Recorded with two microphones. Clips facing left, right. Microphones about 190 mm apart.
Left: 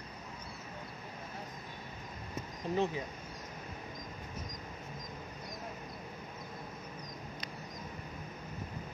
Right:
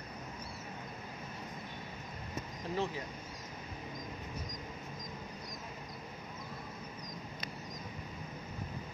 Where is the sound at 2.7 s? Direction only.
20° left (ahead or behind).